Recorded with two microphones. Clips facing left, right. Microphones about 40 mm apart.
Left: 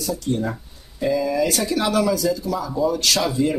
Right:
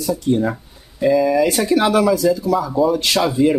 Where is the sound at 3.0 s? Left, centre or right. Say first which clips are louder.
Right 3 dB; right.